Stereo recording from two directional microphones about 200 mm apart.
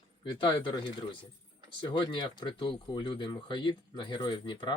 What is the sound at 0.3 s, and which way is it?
Speech, 25° left (ahead or behind).